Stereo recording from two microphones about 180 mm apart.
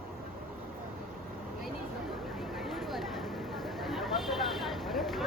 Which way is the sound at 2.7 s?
Centre (ahead or behind).